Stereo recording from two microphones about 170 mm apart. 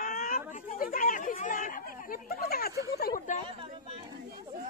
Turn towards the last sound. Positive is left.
turn(degrees=65)  # may be behind; listen again after turning